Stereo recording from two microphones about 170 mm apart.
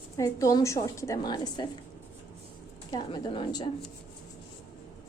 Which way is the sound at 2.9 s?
30° left (ahead or behind).